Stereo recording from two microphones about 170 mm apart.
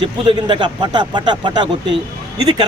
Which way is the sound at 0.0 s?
25° right (ahead or behind).